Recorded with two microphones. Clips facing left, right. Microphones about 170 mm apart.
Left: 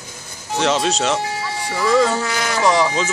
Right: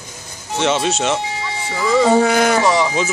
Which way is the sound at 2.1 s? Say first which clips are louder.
Right 9 dB; 55° right (ahead or behind).